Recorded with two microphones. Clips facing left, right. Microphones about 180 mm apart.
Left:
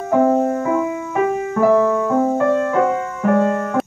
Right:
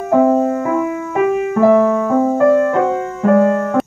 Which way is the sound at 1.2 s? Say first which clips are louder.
Right 5 dB; 70° right (ahead or behind).